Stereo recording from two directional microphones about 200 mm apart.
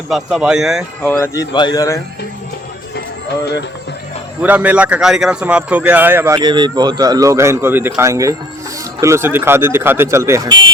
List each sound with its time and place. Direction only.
0.1 s speech: 5° right (ahead or behind)
1.0 s speech: 15° left (ahead or behind)
2.9 s music: 55° left (ahead or behind)
4.4 s a man's voice: 5° right (ahead or behind)